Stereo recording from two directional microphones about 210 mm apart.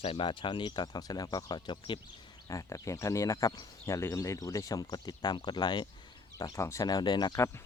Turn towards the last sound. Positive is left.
turn(degrees=20)  # may be behind; listen again after turning